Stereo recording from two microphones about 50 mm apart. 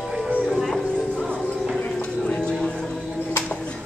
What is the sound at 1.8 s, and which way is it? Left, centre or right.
Clip-clop, left.